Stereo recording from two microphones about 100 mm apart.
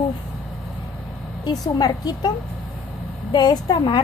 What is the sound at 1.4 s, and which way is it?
Speech, 40° left (ahead or behind).